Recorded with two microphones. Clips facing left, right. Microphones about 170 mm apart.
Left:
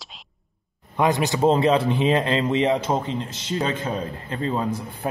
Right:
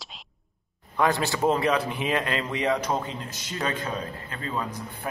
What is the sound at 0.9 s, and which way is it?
A man's voice, 20° left (ahead or behind).